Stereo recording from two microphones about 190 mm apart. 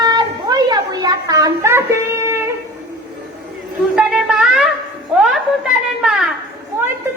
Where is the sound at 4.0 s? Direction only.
5° right (ahead or behind).